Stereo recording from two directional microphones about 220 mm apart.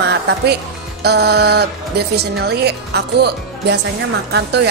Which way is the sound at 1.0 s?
50° right (ahead or behind).